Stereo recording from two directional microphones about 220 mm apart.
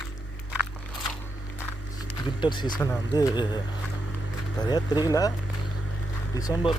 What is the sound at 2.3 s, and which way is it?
Speech, 20° left (ahead or behind).